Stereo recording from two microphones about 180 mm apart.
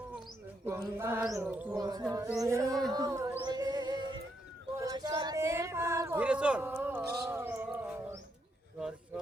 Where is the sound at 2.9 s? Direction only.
20° right (ahead or behind).